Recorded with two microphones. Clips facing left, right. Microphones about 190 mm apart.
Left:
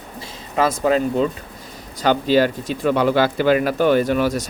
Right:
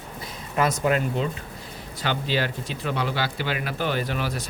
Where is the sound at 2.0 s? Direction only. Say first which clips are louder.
Left 10 dB; 45° left (ahead or behind).